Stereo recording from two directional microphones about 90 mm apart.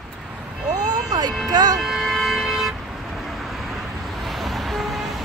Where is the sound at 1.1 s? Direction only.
45° right (ahead or behind).